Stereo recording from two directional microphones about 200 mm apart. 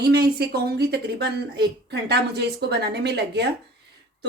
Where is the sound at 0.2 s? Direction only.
50° right (ahead or behind).